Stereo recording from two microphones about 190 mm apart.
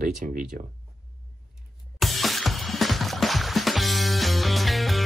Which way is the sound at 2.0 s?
Centre (ahead or behind).